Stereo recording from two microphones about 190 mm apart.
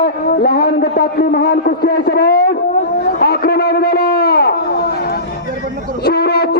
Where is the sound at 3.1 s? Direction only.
55° left (ahead or behind).